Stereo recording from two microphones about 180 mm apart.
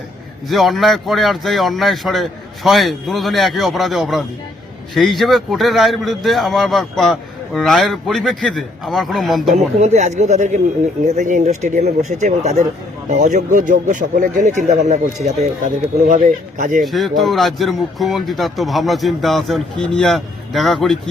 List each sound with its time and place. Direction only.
0.4 s a man's voice: centre (ahead or behind)
9.6 s speech: 40° right (ahead or behind)
16.8 s a man's voice: centre (ahead or behind)